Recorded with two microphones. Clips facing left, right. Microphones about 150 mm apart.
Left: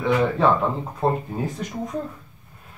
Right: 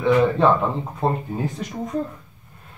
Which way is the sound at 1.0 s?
5° left (ahead or behind).